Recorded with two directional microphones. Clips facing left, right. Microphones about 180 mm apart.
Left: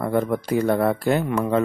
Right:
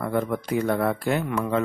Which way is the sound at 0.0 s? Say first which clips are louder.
Left 3 dB; 35° left (ahead or behind).